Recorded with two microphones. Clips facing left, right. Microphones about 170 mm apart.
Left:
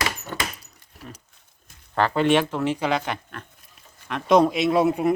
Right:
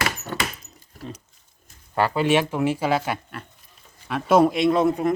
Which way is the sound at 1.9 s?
10° right (ahead or behind).